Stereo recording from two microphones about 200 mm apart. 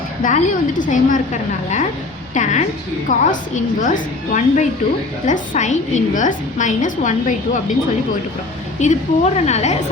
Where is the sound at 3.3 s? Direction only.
40° left (ahead or behind).